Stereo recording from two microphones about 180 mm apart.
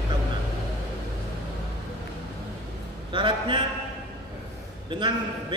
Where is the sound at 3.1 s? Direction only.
25° right (ahead or behind).